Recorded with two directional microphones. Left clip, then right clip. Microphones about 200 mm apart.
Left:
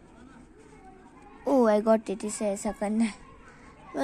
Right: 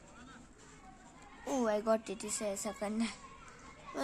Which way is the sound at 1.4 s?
20° left (ahead or behind).